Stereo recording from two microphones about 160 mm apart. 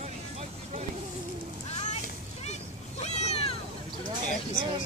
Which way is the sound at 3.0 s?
45° left (ahead or behind).